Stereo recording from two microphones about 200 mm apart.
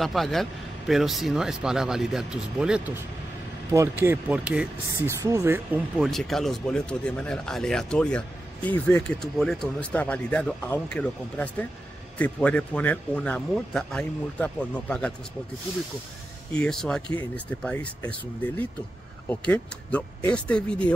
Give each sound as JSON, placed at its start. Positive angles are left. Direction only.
{"t": 0.0, "sound": "speech", "side_deg": 0}
{"t": 5.9, "sound": "speech", "side_deg": 0}
{"t": 16.5, "sound": "speech", "side_deg": 5}
{"t": 19.2, "sound": "speech", "side_deg": 5}